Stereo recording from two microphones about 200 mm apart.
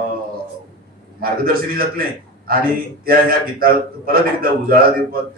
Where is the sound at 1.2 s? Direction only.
45° right (ahead or behind).